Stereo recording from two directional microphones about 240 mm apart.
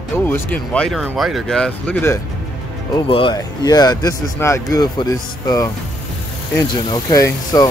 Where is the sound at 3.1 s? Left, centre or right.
Left.